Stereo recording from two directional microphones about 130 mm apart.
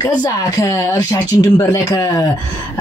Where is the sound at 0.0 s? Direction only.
25° left (ahead or behind).